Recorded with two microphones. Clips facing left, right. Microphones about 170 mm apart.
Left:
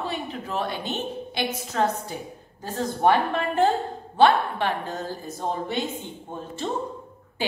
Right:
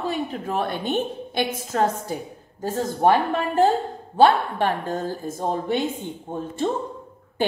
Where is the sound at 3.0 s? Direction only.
35° right (ahead or behind).